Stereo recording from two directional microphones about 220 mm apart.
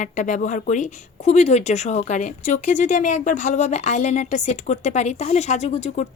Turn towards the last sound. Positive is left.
turn(degrees=30)  # may be behind; listen again after turning